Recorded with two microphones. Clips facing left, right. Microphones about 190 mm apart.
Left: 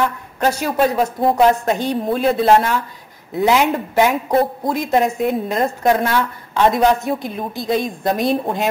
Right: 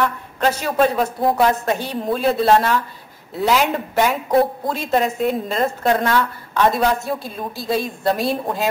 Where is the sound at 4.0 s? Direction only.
15° left (ahead or behind).